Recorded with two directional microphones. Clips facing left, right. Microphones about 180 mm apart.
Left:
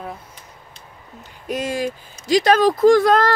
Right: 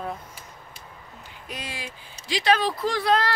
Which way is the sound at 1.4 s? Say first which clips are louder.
Left 14 dB; 45° left (ahead or behind).